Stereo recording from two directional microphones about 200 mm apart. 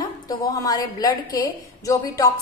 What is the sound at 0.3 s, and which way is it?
A woman's voice, 20° left (ahead or behind).